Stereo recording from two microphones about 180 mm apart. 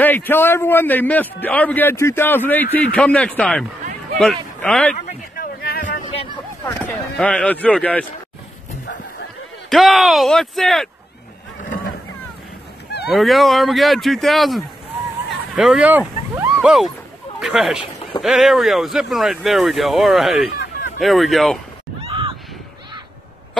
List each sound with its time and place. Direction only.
0.0 s a man's voice: 10° left (ahead or behind)
4.9 s a sound: 50° left (ahead or behind)
6.6 s speech: 15° left (ahead or behind)
9.7 s speech: centre (ahead or behind)
11.6 s vehicle: 50° left (ahead or behind)
13.1 s speech: centre (ahead or behind)
15.2 s a sound: centre (ahead or behind)
17.4 s speech: centre (ahead or behind)
22.0 s a sound: 30° right (ahead or behind)